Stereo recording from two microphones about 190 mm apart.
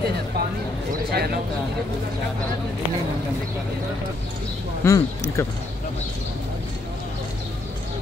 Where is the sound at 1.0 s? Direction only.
55° right (ahead or behind).